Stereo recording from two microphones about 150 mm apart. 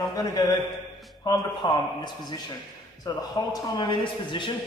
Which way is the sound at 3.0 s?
30° left (ahead or behind).